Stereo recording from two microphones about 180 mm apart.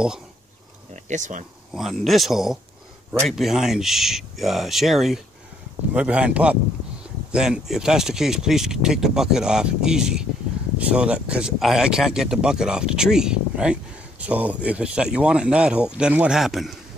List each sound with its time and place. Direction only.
1.0 s speech: 45° right (ahead or behind)
1.7 s speech: centre (ahead or behind)